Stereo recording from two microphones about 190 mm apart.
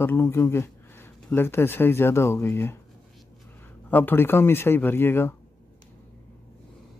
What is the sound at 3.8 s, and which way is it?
Speech, 10° left (ahead or behind).